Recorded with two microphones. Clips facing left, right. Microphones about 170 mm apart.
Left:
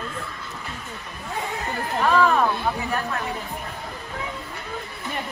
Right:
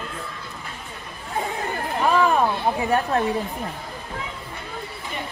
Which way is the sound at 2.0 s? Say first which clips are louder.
Even; 15° right (ahead or behind).